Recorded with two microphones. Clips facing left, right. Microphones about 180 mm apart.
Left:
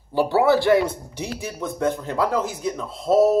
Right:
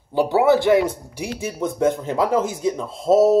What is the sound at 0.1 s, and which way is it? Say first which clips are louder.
Speech: right 2 dB; 15° right (ahead or behind).